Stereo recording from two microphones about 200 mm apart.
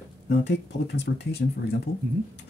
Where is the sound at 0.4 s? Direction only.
60° left (ahead or behind).